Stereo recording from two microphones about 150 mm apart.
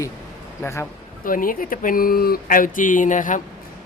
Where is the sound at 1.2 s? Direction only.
65° left (ahead or behind).